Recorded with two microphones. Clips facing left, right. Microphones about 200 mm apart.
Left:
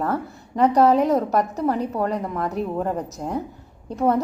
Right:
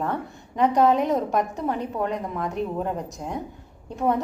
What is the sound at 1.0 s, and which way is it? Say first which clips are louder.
A woman's voice: left 3 dB; centre (ahead or behind).